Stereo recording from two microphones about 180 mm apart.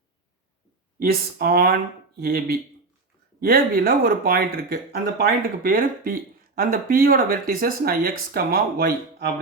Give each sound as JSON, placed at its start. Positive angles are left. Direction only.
{"t": 1.0, "sound": "speech", "side_deg": -55}